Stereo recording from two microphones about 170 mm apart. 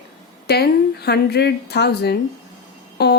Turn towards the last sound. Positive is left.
turn(degrees=75)  # may be behind; listen again after turning